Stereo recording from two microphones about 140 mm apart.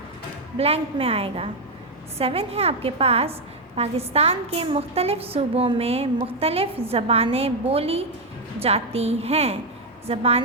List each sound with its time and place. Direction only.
0.5 s a woman's voice: 45° right (ahead or behind)